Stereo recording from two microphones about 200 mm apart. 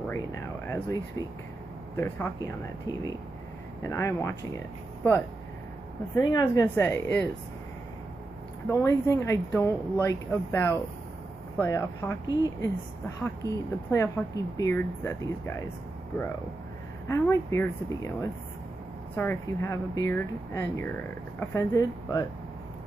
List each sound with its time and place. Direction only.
0.1 s air conditioning: 15° left (ahead or behind)
2.0 s speech: 10° left (ahead or behind)
6.1 s speech: 20° left (ahead or behind)
8.6 s speech: 15° left (ahead or behind)
13.8 s speech: 15° left (ahead or behind)
17.1 s speech: 15° left (ahead or behind)